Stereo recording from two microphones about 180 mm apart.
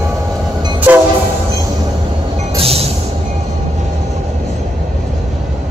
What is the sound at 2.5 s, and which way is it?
Train, 35° right (ahead or behind).